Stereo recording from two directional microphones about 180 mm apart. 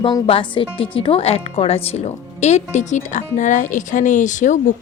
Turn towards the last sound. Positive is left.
turn(degrees=45)  # may be behind; listen again after turning